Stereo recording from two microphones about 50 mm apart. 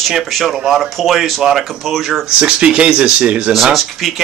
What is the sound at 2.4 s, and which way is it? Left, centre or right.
Speech, right.